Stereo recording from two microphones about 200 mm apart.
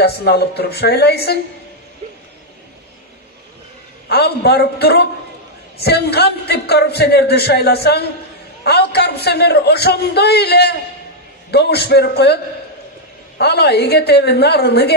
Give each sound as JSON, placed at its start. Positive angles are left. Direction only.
{"t": 0.0, "sound": "a man's voice", "side_deg": 55}
{"t": 4.1, "sound": "a man's voice", "side_deg": 55}
{"t": 13.4, "sound": "a woman's voice", "side_deg": 55}